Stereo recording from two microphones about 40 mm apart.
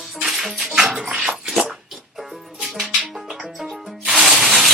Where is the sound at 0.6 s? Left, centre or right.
Right.